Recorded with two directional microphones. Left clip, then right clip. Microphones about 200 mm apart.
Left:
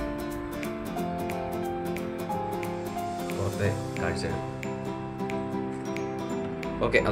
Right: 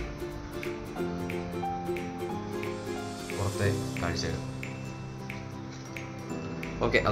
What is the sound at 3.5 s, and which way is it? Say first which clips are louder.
Speech: left 1 dB; 5° left (ahead or behind).